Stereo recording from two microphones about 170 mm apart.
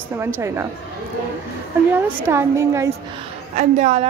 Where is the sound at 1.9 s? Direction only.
15° right (ahead or behind).